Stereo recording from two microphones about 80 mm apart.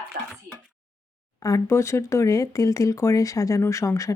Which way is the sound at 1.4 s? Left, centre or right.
Left.